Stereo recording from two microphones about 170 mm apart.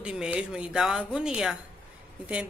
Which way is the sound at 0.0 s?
5° right (ahead or behind).